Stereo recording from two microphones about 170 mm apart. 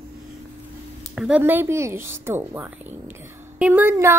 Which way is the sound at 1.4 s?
15° right (ahead or behind).